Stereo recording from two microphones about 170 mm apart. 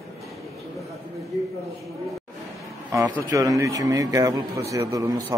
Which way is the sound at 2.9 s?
20° right (ahead or behind).